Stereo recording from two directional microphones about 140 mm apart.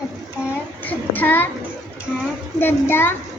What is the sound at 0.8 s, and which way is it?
Speech, 10° left (ahead or behind).